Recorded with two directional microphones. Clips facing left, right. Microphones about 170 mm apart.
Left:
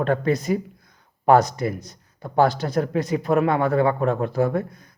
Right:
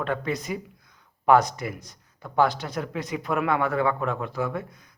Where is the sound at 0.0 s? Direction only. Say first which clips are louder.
Left 7 dB; 40° left (ahead or behind).